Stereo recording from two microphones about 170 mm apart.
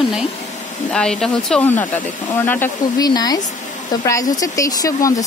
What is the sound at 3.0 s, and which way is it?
Speech, 25° left (ahead or behind).